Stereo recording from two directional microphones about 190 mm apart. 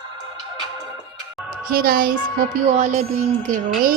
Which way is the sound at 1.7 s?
50° right (ahead or behind).